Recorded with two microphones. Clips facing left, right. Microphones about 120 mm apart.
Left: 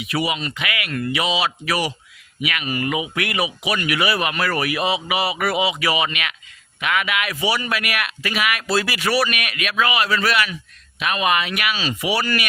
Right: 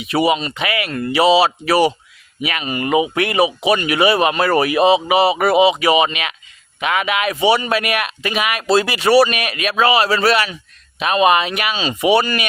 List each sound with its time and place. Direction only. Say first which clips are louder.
0.0 s speech: right 7 dB; 25° right (ahead or behind)